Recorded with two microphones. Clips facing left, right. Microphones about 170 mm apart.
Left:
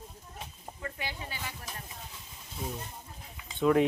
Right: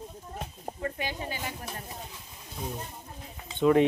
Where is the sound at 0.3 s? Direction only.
40° right (ahead or behind).